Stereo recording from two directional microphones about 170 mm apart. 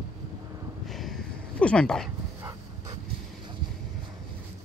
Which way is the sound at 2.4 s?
20° right (ahead or behind).